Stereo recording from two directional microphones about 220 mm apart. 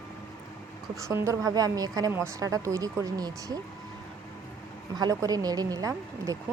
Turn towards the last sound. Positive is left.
turn(degrees=-15)  # may be behind; listen again after turning